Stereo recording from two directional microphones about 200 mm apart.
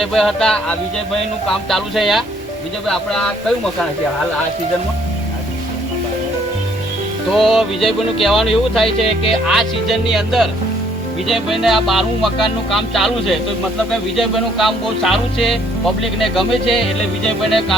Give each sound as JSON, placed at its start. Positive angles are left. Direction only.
{"t": 0.0, "sound": "music", "side_deg": 0}
{"t": 7.3, "sound": "music", "side_deg": 0}